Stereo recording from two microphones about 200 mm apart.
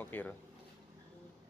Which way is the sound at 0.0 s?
10° left (ahead or behind).